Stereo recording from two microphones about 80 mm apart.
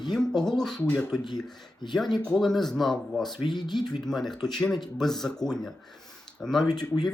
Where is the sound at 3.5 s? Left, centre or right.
Left.